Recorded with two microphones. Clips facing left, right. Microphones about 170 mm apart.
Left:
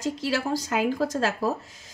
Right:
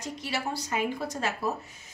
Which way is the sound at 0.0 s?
90° left.